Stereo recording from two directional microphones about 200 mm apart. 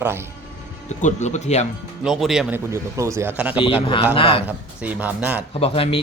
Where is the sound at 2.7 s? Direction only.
15° right (ahead or behind).